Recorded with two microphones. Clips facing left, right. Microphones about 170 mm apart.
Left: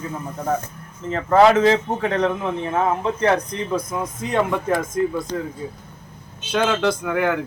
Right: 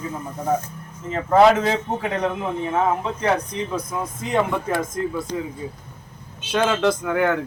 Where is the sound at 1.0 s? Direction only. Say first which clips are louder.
Even; 5° right (ahead or behind).